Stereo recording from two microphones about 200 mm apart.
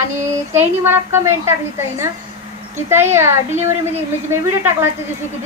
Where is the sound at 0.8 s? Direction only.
10° right (ahead or behind).